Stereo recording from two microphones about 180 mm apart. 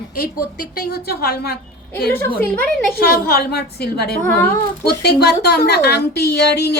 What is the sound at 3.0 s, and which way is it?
A woman's voice, 60° left (ahead or behind).